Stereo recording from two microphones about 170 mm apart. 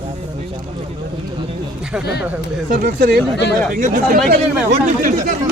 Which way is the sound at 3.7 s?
55° right (ahead or behind).